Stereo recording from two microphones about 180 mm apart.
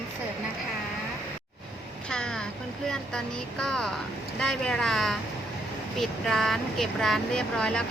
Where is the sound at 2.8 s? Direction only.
5° left (ahead or behind).